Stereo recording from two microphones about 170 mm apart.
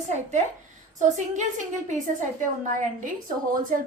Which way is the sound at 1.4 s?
45° right (ahead or behind).